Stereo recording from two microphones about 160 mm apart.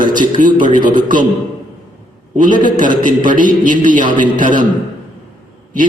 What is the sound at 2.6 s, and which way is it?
Music, 55° right (ahead or behind).